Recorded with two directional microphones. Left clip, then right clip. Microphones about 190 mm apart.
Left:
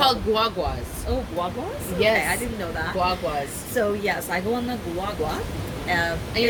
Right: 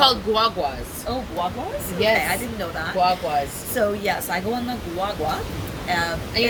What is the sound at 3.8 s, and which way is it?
Speech, 20° right (ahead or behind).